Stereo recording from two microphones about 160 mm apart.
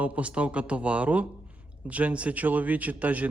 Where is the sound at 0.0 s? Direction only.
10° right (ahead or behind).